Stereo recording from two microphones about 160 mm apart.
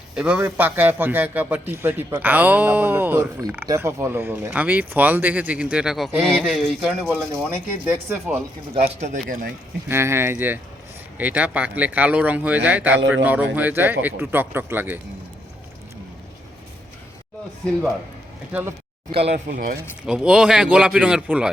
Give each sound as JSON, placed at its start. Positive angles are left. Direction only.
{"t": 0.2, "sound": "a man's voice", "side_deg": -10}
{"t": 8.7, "sound": "speech", "side_deg": -40}
{"t": 9.9, "sound": "a man's voice", "side_deg": -15}
{"t": 18.5, "sound": "a man's voice", "side_deg": -10}
{"t": 19.1, "sound": "speech", "side_deg": -40}
{"t": 19.5, "sound": "speech", "side_deg": -55}
{"t": 20.1, "sound": "speech", "side_deg": -5}